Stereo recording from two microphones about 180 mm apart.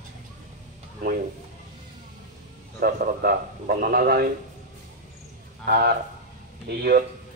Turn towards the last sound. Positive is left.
turn(degrees=-60)  # may be behind; listen again after turning